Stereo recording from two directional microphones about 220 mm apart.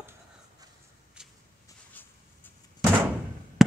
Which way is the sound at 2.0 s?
10° left (ahead or behind).